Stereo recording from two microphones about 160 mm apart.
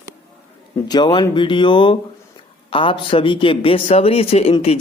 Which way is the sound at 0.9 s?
30° left (ahead or behind).